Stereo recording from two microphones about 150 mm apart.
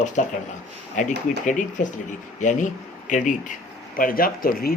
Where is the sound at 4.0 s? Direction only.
70° left (ahead or behind).